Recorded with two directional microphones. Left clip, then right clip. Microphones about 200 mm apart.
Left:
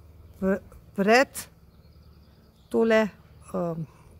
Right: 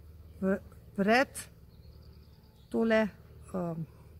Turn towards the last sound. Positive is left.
turn(degrees=30)  # may be behind; listen again after turning